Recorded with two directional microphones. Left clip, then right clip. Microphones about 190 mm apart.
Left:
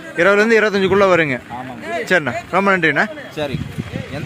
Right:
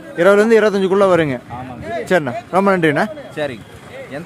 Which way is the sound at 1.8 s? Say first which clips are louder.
Left 1 dB; 65° right (ahead or behind).